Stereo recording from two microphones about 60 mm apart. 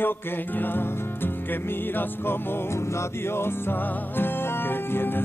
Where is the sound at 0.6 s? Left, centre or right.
Left.